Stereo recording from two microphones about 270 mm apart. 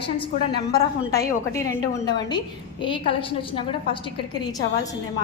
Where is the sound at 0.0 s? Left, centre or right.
Centre.